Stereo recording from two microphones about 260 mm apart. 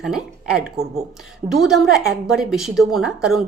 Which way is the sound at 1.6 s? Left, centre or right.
Centre.